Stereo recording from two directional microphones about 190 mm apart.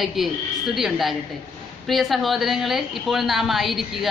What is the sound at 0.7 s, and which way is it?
Speech, centre (ahead or behind).